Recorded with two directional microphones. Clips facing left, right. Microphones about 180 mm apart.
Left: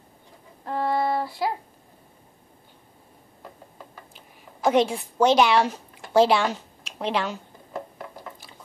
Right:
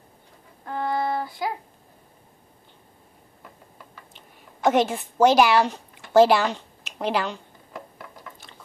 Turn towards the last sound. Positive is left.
turn(degrees=0)  # may be behind; listen again after turning